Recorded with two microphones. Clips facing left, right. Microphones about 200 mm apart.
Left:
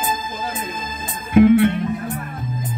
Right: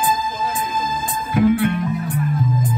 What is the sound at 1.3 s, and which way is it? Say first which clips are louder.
Music: left 5 dB; 25° left (ahead or behind).